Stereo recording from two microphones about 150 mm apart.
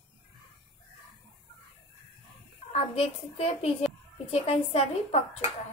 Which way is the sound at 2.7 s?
45° left (ahead or behind).